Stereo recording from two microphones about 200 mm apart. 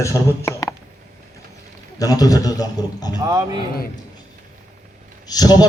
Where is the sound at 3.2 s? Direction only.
20° right (ahead or behind).